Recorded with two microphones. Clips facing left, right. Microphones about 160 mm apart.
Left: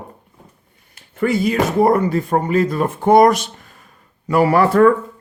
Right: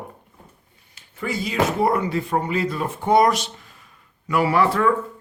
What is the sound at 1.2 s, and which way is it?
Speech, 60° left (ahead or behind).